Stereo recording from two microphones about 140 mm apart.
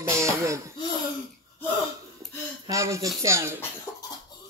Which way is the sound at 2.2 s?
20° right (ahead or behind).